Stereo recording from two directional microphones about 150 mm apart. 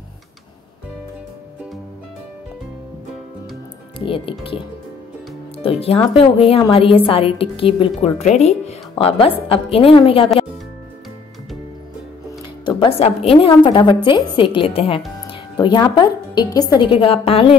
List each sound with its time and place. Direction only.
4.0 s a woman's voice: 35° left (ahead or behind)
5.6 s a woman's voice: 40° left (ahead or behind)
12.6 s a woman's voice: 35° left (ahead or behind)
15.5 s a woman's voice: 30° left (ahead or behind)